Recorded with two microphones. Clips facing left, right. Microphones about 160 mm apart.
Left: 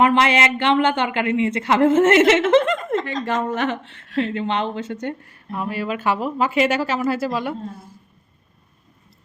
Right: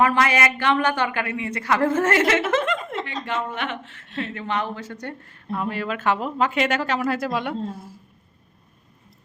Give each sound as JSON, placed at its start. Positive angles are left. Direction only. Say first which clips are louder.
{"t": 0.0, "sound": "speech", "louder": "left 3 dB", "side_deg": 25}
{"t": 3.2, "sound": "a woman's voice", "louder": "left 5 dB", "side_deg": 40}
{"t": 5.2, "sound": "speech", "louder": "right 1 dB", "side_deg": 10}